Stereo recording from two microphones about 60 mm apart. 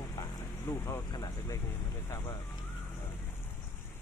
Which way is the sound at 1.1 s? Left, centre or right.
Left.